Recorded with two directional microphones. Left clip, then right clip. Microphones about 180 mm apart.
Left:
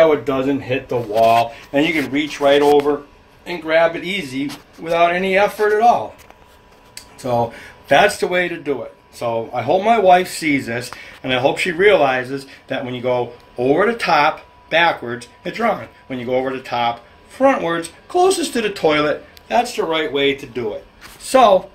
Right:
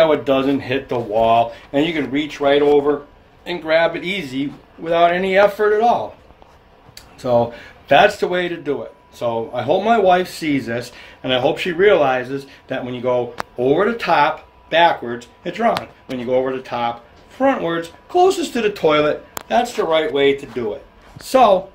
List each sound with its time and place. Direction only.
0.0 s speech: 20° right (ahead or behind)
1.7 s speech: centre (ahead or behind)
5.7 s speech: 5° left (ahead or behind)
7.2 s a woman's voice: 5° right (ahead or behind)